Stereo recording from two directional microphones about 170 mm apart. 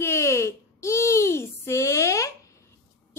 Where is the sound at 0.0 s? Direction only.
15° left (ahead or behind).